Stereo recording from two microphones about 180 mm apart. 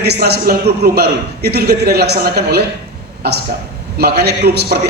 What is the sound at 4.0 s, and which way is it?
Speech, 60° right (ahead or behind).